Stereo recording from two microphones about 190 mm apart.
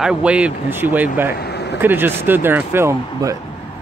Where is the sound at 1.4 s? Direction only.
60° left (ahead or behind).